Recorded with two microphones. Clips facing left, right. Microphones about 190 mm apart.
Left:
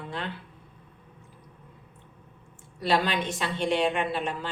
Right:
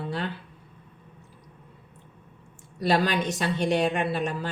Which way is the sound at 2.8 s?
40° right (ahead or behind).